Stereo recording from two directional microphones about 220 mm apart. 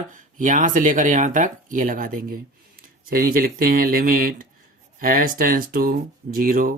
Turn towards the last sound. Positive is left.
turn(degrees=-40)  # may be behind; listen again after turning